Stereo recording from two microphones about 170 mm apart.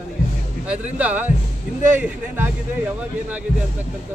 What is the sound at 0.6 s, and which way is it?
Speech, 10° right (ahead or behind).